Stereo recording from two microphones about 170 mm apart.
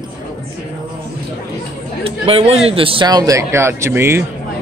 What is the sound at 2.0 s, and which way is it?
A man's voice, 35° right (ahead or behind).